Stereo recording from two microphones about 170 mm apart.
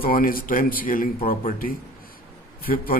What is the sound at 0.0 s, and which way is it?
Speech, 55° left (ahead or behind).